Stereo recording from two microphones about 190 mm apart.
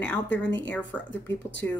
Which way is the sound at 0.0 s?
5° left (ahead or behind).